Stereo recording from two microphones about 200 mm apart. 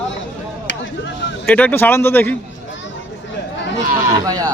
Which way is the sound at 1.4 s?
10° left (ahead or behind).